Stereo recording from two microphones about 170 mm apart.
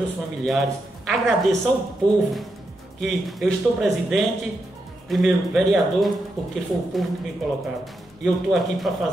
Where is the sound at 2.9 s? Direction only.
Centre (ahead or behind).